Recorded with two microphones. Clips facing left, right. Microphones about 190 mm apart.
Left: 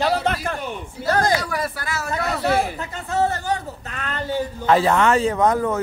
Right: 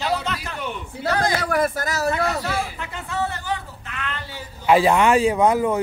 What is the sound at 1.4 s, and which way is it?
Speech, 50° right (ahead or behind).